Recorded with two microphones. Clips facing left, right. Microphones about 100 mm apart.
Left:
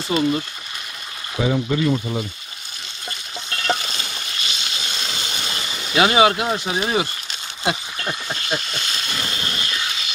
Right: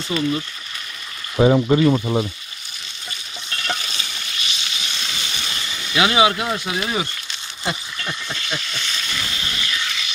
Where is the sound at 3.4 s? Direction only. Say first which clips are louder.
Left 4 dB; 35° left (ahead or behind).